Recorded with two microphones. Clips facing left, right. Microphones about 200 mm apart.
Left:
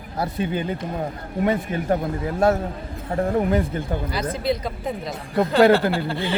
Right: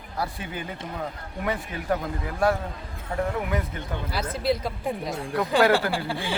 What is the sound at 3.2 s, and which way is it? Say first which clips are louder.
Speech: left 7 dB; 35° left (ahead or behind).